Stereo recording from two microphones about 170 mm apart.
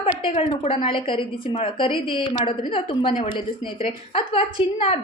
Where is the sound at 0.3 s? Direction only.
35° left (ahead or behind).